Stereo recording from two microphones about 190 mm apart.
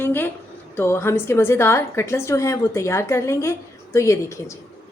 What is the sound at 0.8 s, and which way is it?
A woman's voice, 15° left (ahead or behind).